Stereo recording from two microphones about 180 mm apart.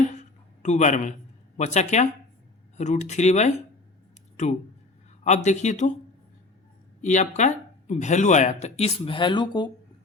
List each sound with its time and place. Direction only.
0.2 s a sound: 40° left (ahead or behind)
1.5 s speech: 40° left (ahead or behind)
5.2 s speech: 40° left (ahead or behind)
7.0 s speech: 40° left (ahead or behind); by 9.6 s 25° left (ahead or behind)